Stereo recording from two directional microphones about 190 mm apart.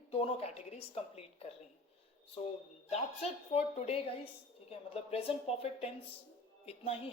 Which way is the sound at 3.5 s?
35° left (ahead or behind).